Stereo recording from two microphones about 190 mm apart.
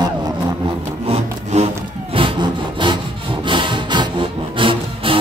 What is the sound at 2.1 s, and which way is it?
Sawing, 25° right (ahead or behind).